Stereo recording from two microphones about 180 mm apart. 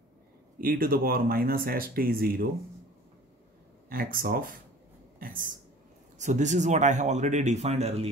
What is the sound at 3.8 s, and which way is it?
Speech, 55° right (ahead or behind).